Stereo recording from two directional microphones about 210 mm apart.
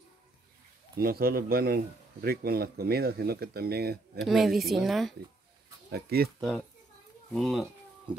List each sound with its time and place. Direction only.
0.9 s speech: 45° right (ahead or behind)
4.2 s a woman's voice: centre (ahead or behind)
5.9 s speech: 50° right (ahead or behind)
7.3 s a woman's voice: centre (ahead or behind)